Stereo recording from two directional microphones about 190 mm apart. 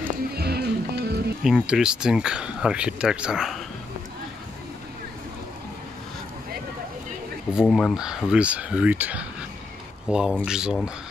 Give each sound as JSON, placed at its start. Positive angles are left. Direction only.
{"t": 0.3, "sound": "music", "side_deg": -55}
{"t": 1.4, "sound": "speech", "side_deg": -5}
{"t": 7.7, "sound": "speech", "side_deg": 0}